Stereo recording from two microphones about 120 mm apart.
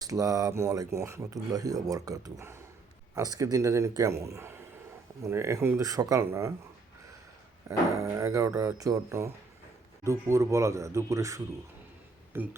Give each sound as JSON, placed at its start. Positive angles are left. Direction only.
{"t": 0.0, "sound": "speech", "side_deg": -30}
{"t": 7.7, "sound": "speech", "side_deg": -25}